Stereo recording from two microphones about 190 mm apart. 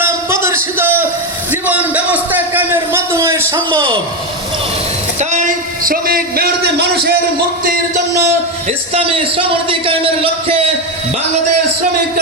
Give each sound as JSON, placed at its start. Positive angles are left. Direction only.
{"t": 0.0, "sound": "a sound", "side_deg": -15}
{"t": 3.7, "sound": "a man's voice", "side_deg": -25}
{"t": 5.2, "sound": "a man's voice", "side_deg": -40}
{"t": 8.9, "sound": "a man's voice", "side_deg": -30}